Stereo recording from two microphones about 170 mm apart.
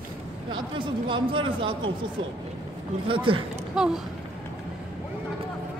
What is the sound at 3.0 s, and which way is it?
Speech, 30° right (ahead or behind).